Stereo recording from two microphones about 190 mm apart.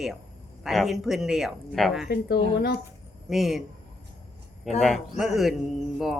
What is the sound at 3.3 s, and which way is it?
Speech, centre (ahead or behind).